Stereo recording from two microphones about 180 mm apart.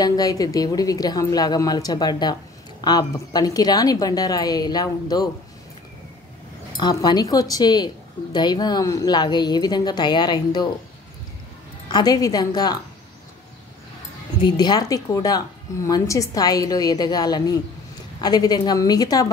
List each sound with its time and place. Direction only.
0.0 s speech: 20° left (ahead or behind)
6.8 s speech: 25° left (ahead or behind)
11.9 s speech: 20° left (ahead or behind)
14.4 s speech: 25° left (ahead or behind)